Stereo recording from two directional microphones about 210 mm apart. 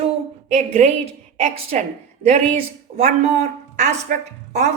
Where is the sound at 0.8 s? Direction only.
35° right (ahead or behind).